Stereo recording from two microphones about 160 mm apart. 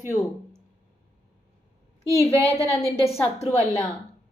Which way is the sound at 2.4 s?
20° right (ahead or behind).